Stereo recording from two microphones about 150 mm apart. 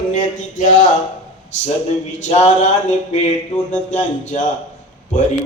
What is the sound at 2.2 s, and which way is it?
Mantra, 50° left (ahead or behind).